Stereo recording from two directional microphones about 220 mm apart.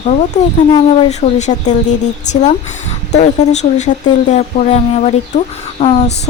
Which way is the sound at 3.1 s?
30° left (ahead or behind).